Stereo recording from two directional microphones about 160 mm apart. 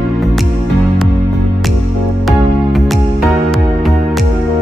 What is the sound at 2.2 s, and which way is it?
Music, centre (ahead or behind).